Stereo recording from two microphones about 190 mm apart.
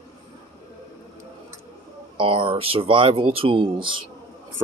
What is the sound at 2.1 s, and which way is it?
Speech, 25° right (ahead or behind).